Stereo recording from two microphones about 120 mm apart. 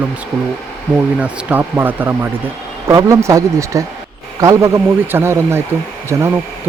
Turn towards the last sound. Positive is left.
turn(degrees=-25)  # may be behind; listen again after turning